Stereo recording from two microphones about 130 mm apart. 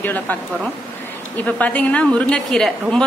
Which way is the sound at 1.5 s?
10° left (ahead or behind).